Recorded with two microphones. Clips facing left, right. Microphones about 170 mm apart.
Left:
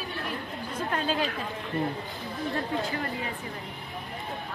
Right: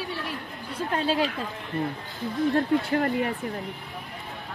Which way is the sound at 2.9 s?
55° right (ahead or behind).